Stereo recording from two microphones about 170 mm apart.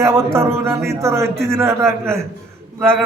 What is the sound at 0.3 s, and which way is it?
A man's voice, 15° right (ahead or behind).